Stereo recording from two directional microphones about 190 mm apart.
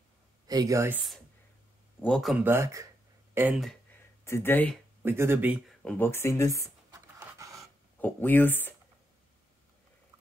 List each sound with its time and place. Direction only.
0.5 s speech: 20° right (ahead or behind)
2.0 s speech: 5° left (ahead or behind)
2.4 s speech: 15° right (ahead or behind)
3.3 s speech: 5° right (ahead or behind)
4.2 s speech: 15° left (ahead or behind)
5.0 s speech: 10° right (ahead or behind)
5.8 s speech: 5° left (ahead or behind)
6.9 s pant: 15° right (ahead or behind)
7.6 s speech: 10° left (ahead or behind)